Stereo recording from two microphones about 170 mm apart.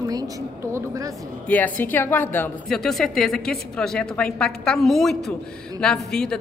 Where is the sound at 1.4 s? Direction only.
10° left (ahead or behind).